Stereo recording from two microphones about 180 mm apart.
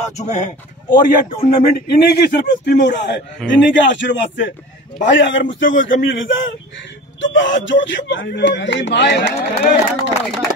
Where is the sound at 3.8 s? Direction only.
90° left.